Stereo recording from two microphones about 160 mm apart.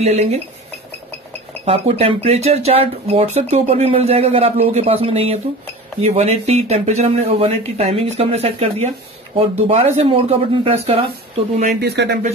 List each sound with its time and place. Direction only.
0.0 s speech: 45° right (ahead or behind)
1.6 s speech: 40° right (ahead or behind)
11.6 s speech: 90° right